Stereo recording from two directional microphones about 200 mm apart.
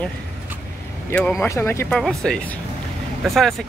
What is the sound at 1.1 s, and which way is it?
Speech, 5° left (ahead or behind).